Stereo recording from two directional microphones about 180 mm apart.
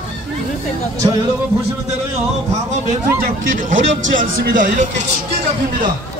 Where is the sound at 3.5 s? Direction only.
45° right (ahead or behind).